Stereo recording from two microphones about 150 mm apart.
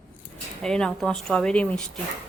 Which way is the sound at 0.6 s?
5° left (ahead or behind).